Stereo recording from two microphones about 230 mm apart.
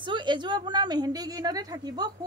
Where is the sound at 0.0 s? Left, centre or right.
Centre.